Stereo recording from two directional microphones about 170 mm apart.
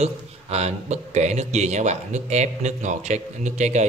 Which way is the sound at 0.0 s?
40° right (ahead or behind).